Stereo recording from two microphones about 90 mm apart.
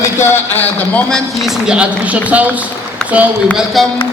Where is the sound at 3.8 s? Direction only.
Centre (ahead or behind).